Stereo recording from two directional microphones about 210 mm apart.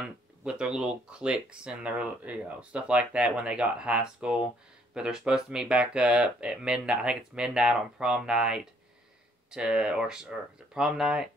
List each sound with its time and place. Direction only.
0.0 s speech: 5° right (ahead or behind)